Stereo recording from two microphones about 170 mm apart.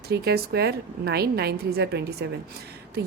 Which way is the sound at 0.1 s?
70° right (ahead or behind).